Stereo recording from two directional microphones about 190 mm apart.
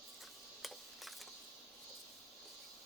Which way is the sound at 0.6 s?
Centre (ahead or behind).